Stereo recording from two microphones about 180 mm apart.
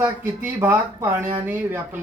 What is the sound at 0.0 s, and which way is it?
Speech, 10° right (ahead or behind).